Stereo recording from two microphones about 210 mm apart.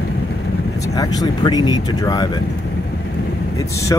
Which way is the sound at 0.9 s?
15° left (ahead or behind).